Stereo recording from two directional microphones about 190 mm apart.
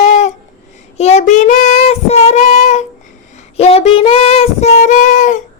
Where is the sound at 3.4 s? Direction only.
35° left (ahead or behind).